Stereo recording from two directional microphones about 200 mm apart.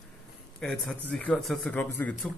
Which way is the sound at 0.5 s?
Centre (ahead or behind).